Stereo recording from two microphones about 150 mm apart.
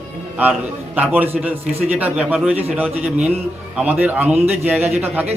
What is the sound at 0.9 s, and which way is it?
A man's voice, 10° right (ahead or behind).